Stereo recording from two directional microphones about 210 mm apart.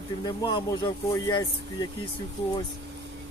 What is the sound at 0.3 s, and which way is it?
Speech, 20° left (ahead or behind).